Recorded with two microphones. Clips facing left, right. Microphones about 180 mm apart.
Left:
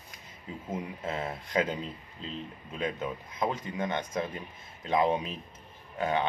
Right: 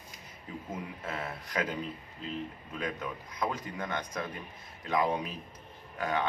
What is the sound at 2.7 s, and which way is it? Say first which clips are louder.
Speech: left 4 dB; 25° left (ahead or behind).